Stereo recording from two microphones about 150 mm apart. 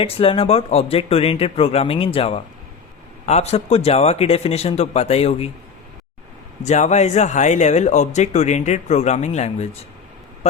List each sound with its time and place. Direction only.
0.0 s speech: 40° left (ahead or behind)
6.6 s speech: 50° left (ahead or behind)